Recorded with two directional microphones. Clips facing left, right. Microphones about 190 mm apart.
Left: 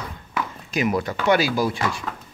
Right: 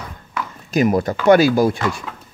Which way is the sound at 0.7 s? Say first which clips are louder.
Right 6 dB; 40° right (ahead or behind).